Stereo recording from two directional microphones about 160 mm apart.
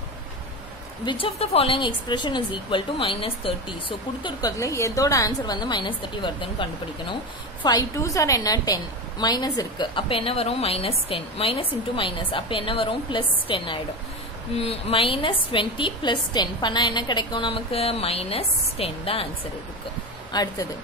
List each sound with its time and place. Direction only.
1.0 s a woman's voice: 35° left (ahead or behind)
4.2 s a woman's voice: 25° left (ahead or behind)
20.3 s a woman's voice: 25° left (ahead or behind)